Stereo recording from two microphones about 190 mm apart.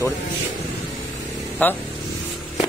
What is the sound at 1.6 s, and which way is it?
Speech, 10° left (ahead or behind).